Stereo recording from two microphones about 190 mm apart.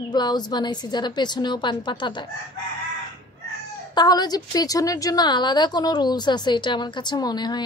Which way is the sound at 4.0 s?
20° left (ahead or behind).